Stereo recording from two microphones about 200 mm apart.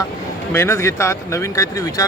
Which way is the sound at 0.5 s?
15° left (ahead or behind).